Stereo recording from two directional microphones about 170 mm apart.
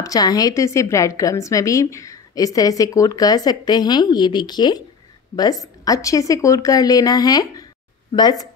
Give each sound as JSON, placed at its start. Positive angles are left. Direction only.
{"t": 0.0, "sound": "a woman's voice", "side_deg": 20}